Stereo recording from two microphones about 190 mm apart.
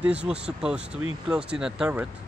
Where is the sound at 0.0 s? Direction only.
5° right (ahead or behind).